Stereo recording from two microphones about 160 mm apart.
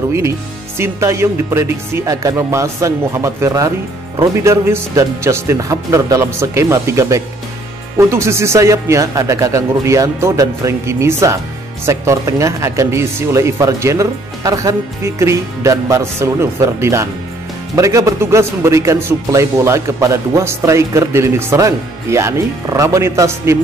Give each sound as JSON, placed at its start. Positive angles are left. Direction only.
{"t": 0.7, "sound": "speech", "side_deg": -20}